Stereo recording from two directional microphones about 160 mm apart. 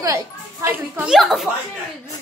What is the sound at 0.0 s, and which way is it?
A child's voice, 20° right (ahead or behind).